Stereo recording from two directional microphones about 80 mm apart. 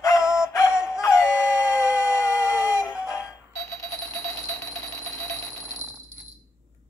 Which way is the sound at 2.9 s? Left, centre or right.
Centre.